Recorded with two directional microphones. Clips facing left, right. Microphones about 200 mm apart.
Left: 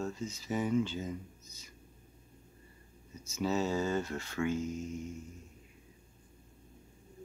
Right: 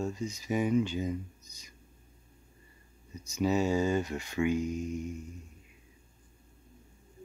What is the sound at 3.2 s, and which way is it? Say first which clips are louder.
Speech: right 4 dB; 15° right (ahead or behind).